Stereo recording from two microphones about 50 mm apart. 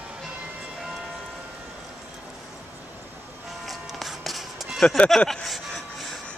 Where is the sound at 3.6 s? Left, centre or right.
Centre.